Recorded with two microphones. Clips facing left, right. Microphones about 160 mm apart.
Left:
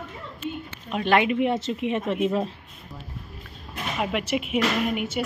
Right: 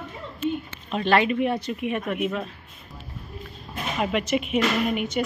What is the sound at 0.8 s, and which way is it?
Speech, 10° left (ahead or behind).